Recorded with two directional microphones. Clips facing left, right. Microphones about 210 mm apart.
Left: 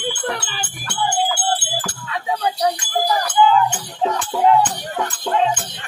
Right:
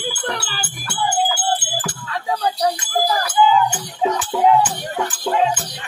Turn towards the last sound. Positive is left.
turn(degrees=-5)  # may be behind; listen again after turning